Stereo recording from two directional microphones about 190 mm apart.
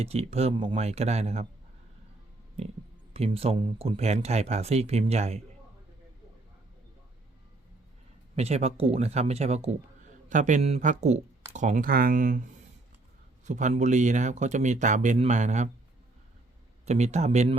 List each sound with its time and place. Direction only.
0.0 s speech: 35° right (ahead or behind)
2.6 s speech: 35° right (ahead or behind)
8.4 s speech: 35° right (ahead or behind)
13.4 s speech: 40° right (ahead or behind)
16.8 s speech: 35° right (ahead or behind)